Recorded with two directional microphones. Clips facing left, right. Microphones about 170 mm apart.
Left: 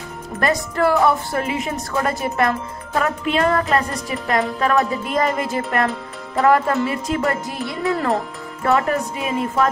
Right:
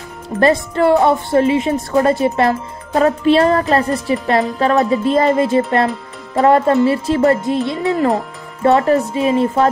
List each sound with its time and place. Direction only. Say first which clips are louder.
0.4 s a woman's voice: right 6 dB; 25° right (ahead or behind)